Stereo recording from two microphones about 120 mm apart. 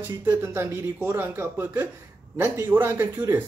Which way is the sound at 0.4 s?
20° right (ahead or behind).